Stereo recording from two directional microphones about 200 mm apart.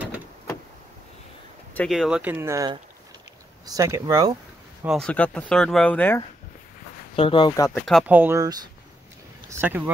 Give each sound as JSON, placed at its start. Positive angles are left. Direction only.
{"t": 1.7, "sound": "speech", "side_deg": 5}
{"t": 4.8, "sound": "speech", "side_deg": 5}
{"t": 7.2, "sound": "speech", "side_deg": 25}
{"t": 8.1, "sound": "speech", "side_deg": -10}